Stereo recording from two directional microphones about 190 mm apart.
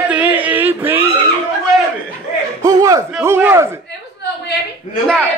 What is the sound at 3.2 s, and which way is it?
Speech, 15° right (ahead or behind).